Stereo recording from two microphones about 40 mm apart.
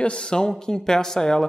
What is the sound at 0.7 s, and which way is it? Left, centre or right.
Speech, centre.